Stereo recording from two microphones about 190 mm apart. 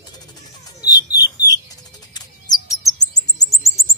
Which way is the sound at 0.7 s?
20° left (ahead or behind).